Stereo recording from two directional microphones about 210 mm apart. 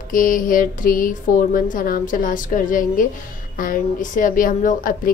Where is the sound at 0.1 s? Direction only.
40° left (ahead or behind).